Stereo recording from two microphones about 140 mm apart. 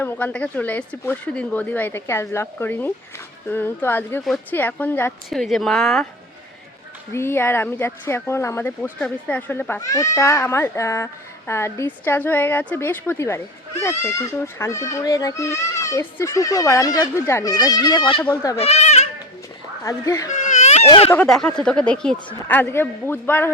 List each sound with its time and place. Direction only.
0.0 s speech: 10° left (ahead or behind)
5.3 s a woman's voice: centre (ahead or behind)
7.1 s speech: 20° left (ahead or behind)
18.5 s speech: 50° left (ahead or behind)
19.8 s speech: 25° left (ahead or behind)
20.3 s baby cry: 55° left (ahead or behind)
21.2 s speech: 5° left (ahead or behind)